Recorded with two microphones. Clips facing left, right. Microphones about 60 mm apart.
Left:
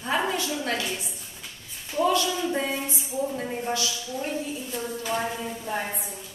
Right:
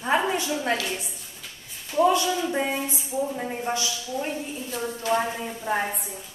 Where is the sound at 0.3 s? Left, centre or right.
Right.